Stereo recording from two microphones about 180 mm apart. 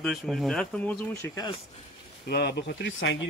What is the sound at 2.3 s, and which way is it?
Speech, 65° left (ahead or behind).